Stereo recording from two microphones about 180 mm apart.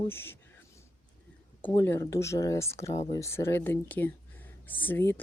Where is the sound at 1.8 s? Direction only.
15° left (ahead or behind).